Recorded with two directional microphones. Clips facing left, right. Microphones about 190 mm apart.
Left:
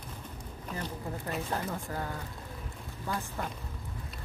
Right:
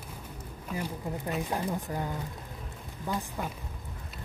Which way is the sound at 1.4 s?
15° right (ahead or behind).